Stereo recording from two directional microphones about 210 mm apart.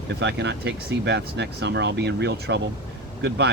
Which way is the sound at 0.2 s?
55° right (ahead or behind).